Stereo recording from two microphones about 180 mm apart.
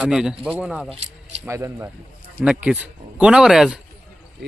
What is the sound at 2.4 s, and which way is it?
Speech, 5° right (ahead or behind).